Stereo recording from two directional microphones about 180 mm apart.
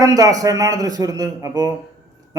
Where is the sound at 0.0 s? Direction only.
20° right (ahead or behind).